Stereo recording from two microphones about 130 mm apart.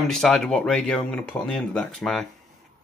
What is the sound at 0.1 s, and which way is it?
Speech, 5° left (ahead or behind).